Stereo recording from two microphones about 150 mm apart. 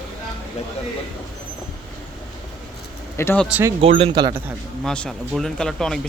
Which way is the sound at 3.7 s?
40° right (ahead or behind).